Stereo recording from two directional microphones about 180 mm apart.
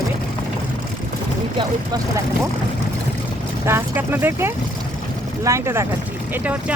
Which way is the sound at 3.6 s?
15° right (ahead or behind).